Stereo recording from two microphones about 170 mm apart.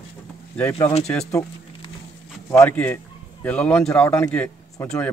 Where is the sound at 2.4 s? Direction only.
15° left (ahead or behind).